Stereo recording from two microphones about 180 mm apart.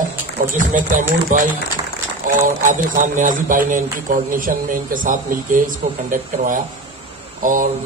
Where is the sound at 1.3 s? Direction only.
45° right (ahead or behind).